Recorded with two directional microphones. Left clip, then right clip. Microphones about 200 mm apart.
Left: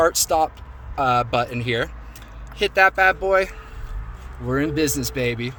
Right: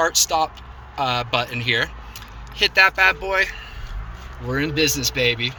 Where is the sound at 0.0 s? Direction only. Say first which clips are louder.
Left 1 dB; 60° left (ahead or behind).